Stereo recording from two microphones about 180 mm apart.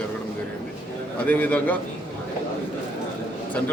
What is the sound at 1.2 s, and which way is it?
Speech, 10° left (ahead or behind).